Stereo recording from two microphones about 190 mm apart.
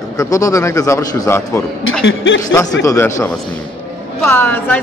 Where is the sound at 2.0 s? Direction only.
75° left (ahead or behind).